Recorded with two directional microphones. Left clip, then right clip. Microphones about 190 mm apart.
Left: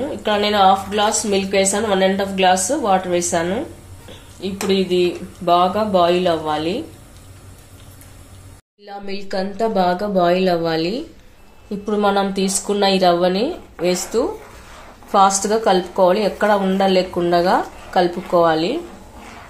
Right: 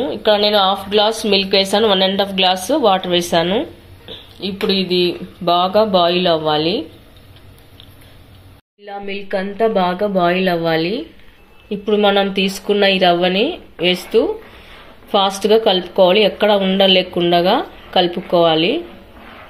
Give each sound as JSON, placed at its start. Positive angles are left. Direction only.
{"t": 0.2, "sound": "speech", "side_deg": -35}
{"t": 8.8, "sound": "a woman's voice", "side_deg": -10}
{"t": 15.5, "sound": "speech", "side_deg": -35}
{"t": 17.3, "sound": "speech", "side_deg": -45}
{"t": 18.3, "sound": "a woman's voice", "side_deg": -25}